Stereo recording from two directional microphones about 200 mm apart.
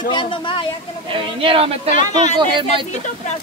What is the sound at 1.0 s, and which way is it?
Speech, 25° right (ahead or behind).